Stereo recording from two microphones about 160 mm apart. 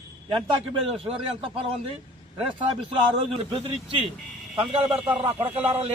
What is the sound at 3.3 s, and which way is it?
Speech, 35° right (ahead or behind).